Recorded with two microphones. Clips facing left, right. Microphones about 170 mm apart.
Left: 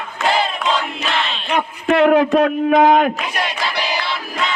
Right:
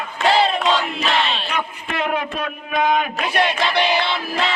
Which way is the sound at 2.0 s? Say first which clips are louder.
Left 11 dB; 70° left (ahead or behind).